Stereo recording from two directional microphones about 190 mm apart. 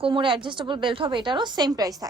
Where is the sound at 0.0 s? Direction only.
25° right (ahead or behind).